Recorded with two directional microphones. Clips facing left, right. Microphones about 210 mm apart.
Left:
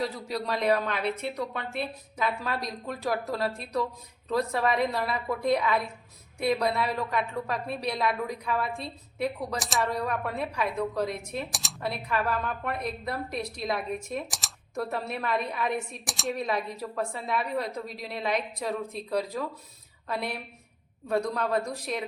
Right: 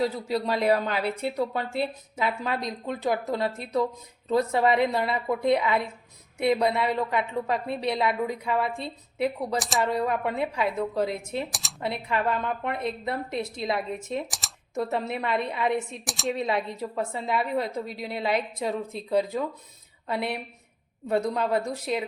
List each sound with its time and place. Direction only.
0.0 s a woman's voice: 25° right (ahead or behind)
9.6 s speech: centre (ahead or behind)
10.0 s a woman's voice: 25° right (ahead or behind)
14.3 s speech: centre (ahead or behind)
14.8 s a woman's voice: 20° right (ahead or behind)
16.0 s speech: centre (ahead or behind)
16.3 s a woman's voice: 25° right (ahead or behind)
17.8 s speech: centre (ahead or behind)
18.1 s a woman's voice: 25° right (ahead or behind)